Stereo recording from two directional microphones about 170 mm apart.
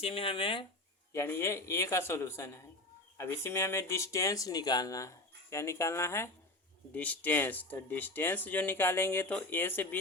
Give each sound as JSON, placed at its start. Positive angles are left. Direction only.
{"t": 0.0, "sound": "speech", "side_deg": 35}
{"t": 1.1, "sound": "speech", "side_deg": 15}